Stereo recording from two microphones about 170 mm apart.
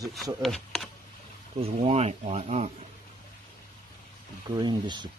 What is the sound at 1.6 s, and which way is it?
Speech, 40° right (ahead or behind).